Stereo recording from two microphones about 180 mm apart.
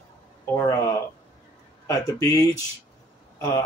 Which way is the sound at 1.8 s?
20° left (ahead or behind).